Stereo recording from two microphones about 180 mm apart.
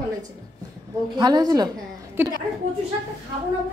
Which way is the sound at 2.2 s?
10° right (ahead or behind).